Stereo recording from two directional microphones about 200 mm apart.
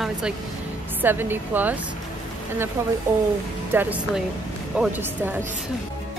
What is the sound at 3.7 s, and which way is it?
A woman's voice, 5° right (ahead or behind).